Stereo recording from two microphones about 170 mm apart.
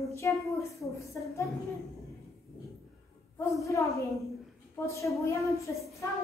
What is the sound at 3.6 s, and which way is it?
Speech, 20° left (ahead or behind).